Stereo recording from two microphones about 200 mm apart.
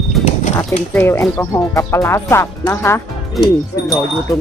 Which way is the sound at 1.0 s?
10° left (ahead or behind).